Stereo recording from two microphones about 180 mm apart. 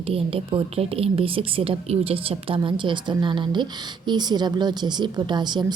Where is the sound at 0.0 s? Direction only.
30° right (ahead or behind).